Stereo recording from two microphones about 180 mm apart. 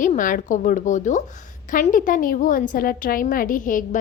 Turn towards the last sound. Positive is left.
turn(degrees=45)  # may be behind; listen again after turning